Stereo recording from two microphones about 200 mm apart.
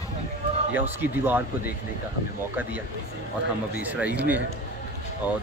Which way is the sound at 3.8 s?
10° right (ahead or behind).